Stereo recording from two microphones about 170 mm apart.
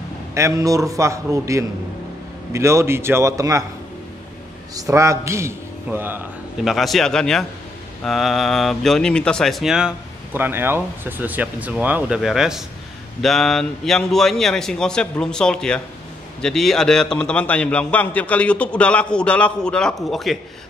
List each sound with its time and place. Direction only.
0.3 s a man's voice: 15° right (ahead or behind)
4.7 s a man's voice: 20° right (ahead or behind)
6.6 s speech: centre (ahead or behind)